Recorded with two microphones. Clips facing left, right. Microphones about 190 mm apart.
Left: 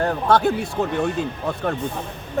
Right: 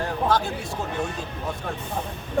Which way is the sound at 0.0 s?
60° left (ahead or behind).